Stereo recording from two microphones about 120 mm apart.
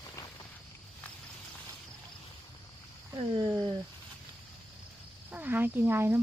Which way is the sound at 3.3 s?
35° right (ahead or behind).